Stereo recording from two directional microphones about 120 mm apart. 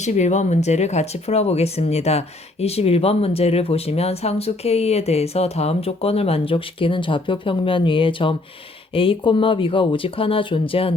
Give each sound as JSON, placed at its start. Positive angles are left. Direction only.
{"t": 0.0, "sound": "speech", "side_deg": 75}